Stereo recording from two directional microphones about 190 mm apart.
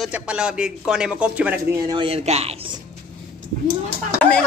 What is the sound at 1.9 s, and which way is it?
Speech, 30° right (ahead or behind).